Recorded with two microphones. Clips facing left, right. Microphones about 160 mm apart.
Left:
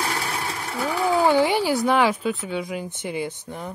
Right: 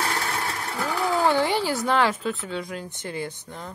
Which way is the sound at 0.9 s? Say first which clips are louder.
Left 3 dB; 15° left (ahead or behind).